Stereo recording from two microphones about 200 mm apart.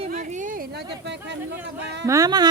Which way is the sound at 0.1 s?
35° right (ahead or behind).